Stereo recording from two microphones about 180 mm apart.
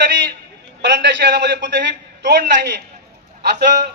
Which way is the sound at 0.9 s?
75° right (ahead or behind).